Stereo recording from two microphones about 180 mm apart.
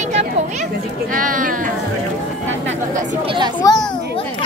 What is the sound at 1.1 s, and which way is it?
Speech, 50° right (ahead or behind).